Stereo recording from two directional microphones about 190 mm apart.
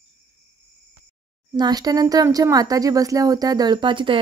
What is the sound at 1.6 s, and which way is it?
Speech, 20° right (ahead or behind).